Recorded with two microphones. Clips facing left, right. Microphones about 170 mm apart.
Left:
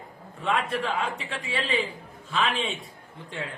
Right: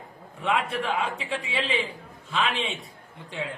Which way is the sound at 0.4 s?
Centre (ahead or behind).